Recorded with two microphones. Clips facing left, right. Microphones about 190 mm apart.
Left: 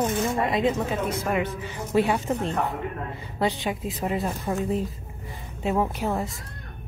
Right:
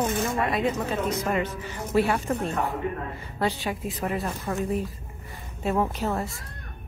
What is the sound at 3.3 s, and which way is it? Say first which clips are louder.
Speech: left 2 dB; 15° left (ahead or behind).